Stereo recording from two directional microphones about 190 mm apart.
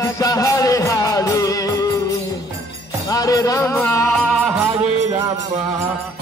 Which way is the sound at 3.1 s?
20° left (ahead or behind).